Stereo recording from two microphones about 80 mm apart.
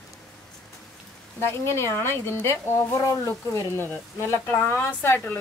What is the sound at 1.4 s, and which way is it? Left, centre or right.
Speech, left.